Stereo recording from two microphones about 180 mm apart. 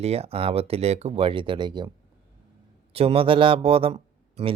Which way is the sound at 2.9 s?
35° right (ahead or behind).